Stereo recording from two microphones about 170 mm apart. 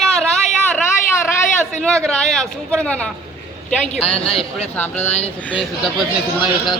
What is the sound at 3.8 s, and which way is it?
A woman's voice, 40° left (ahead or behind).